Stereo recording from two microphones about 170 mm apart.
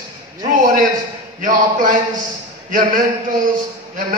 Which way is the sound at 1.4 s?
55° right (ahead or behind).